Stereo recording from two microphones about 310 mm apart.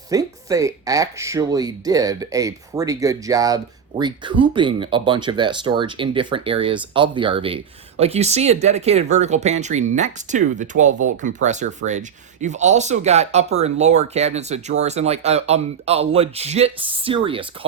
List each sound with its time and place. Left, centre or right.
0.1 s speech: centre